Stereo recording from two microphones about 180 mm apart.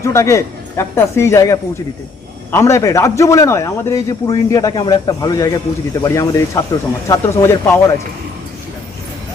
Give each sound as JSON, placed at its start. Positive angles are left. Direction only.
{"t": 0.0, "sound": "a man's voice", "side_deg": 15}